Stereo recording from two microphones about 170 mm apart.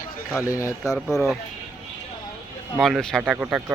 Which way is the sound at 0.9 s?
5° left (ahead or behind).